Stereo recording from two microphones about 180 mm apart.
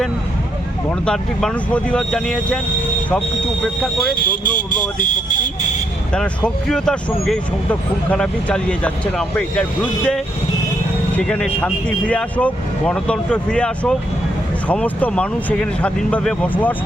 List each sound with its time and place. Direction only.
0.9 s speech: 5° left (ahead or behind)
4.1 s speech: 50° left (ahead or behind)
6.1 s speech: 5° left (ahead or behind)
11.2 s speech: 5° left (ahead or behind)